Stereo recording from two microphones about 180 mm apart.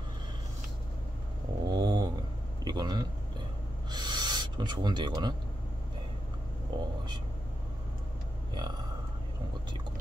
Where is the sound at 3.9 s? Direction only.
25° right (ahead or behind).